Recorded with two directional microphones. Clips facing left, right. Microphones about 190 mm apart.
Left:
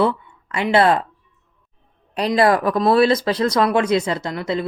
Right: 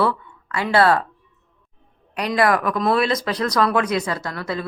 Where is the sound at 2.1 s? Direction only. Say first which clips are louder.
Left 3 dB; 30° left (ahead or behind).